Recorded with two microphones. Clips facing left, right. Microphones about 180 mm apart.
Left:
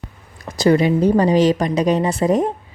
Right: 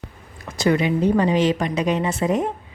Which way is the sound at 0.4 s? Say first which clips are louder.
Left 5 dB; 35° left (ahead or behind).